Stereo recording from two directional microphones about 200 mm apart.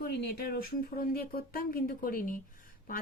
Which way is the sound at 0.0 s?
50° left (ahead or behind).